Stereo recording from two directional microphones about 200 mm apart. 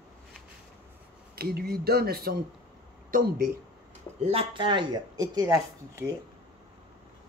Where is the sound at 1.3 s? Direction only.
50° right (ahead or behind).